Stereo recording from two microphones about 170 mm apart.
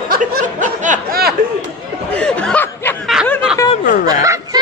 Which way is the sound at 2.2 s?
5° left (ahead or behind).